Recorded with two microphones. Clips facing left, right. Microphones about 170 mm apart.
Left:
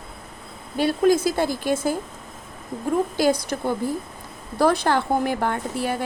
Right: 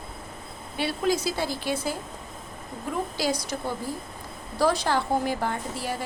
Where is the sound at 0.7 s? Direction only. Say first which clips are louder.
Left 7 dB; 45° left (ahead or behind).